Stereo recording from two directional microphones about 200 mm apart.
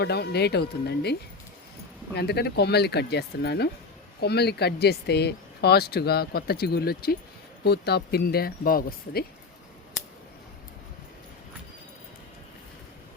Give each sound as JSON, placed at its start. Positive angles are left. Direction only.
{"t": 0.0, "sound": "speech", "side_deg": 55}
{"t": 2.1, "sound": "speech", "side_deg": 55}